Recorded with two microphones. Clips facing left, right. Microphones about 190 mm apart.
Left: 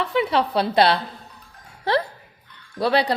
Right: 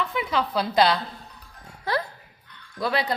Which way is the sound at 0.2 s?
65° left (ahead or behind).